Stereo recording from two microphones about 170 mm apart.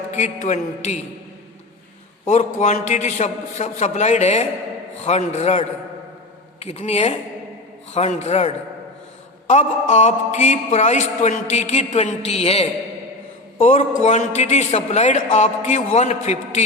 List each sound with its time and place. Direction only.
0.1 s a man's voice: 45° left (ahead or behind)
2.2 s a man's voice: 45° left (ahead or behind)
14.0 s a man's voice: 45° left (ahead or behind)